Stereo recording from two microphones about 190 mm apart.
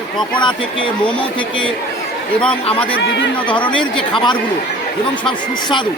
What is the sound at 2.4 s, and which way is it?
Speech, 5° left (ahead or behind).